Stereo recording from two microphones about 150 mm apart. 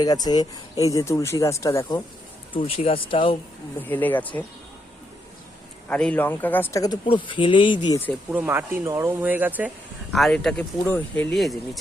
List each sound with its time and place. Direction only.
0.0 s speech: 25° left (ahead or behind)
2.5 s speech: 40° left (ahead or behind)
3.8 s speech: 15° left (ahead or behind)
5.9 s speech: 10° left (ahead or behind); by 7.9 s 30° left (ahead or behind)
8.3 s speech: 15° right (ahead or behind)
10.1 s speech: centre (ahead or behind)